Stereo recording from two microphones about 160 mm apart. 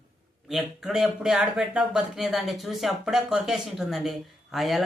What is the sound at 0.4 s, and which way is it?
A man's voice, centre (ahead or behind).